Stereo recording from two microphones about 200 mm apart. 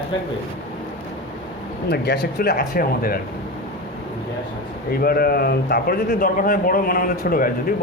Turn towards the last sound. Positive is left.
turn(degrees=45)  # may be behind; listen again after turning